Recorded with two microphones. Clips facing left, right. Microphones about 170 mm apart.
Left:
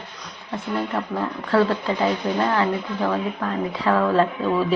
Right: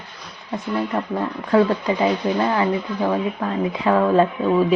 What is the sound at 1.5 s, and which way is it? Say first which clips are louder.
Speech: right 3 dB; 15° right (ahead or behind).